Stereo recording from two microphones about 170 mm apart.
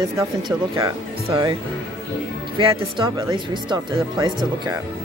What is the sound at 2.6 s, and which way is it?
Speech, 30° right (ahead or behind).